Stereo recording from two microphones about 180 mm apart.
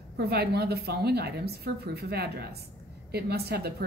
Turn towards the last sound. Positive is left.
turn(degrees=-60)  # may be behind; listen again after turning